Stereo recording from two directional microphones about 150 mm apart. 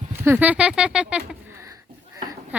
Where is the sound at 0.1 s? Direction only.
15° right (ahead or behind).